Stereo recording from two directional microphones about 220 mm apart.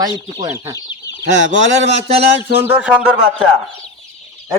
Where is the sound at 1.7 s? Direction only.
30° right (ahead or behind).